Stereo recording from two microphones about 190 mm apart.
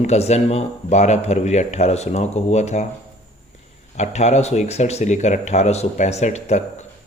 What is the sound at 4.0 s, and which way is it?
Speech, 35° left (ahead or behind).